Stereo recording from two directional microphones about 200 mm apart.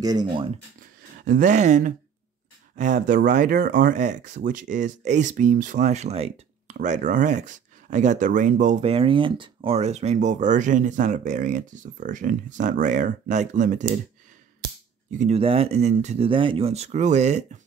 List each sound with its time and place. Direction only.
0.0 s speech: 20° right (ahead or behind)
1.2 s speech: 40° right (ahead or behind)
15.0 s speech: 35° right (ahead or behind)